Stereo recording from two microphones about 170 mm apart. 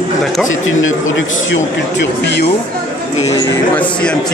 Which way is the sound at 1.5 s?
90° left.